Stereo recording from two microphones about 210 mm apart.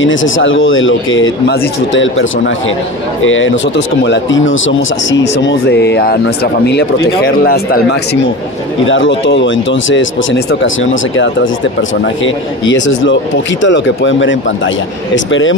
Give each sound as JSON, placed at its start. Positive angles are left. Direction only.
{"t": 0.0, "sound": "speech", "side_deg": 65}
{"t": 1.5, "sound": "speech", "side_deg": 55}
{"t": 8.8, "sound": "speech", "side_deg": 65}